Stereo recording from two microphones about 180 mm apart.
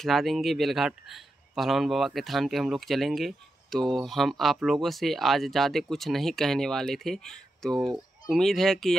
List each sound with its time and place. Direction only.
0.0 s speech: centre (ahead or behind)
7.7 s speech: 20° right (ahead or behind)
8.3 s speech: centre (ahead or behind)